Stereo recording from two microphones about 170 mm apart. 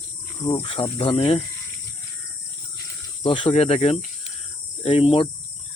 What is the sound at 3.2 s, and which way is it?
Speech, 30° left (ahead or behind).